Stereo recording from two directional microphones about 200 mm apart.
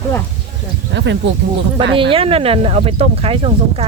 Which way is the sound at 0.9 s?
65° right (ahead or behind).